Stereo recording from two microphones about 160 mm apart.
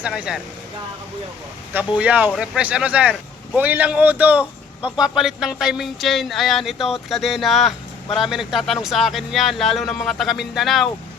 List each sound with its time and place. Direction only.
0.0 s speech: 5° right (ahead or behind)
1.7 s speech: 10° right (ahead or behind)